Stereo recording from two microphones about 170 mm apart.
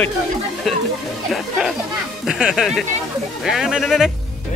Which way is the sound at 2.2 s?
5° right (ahead or behind).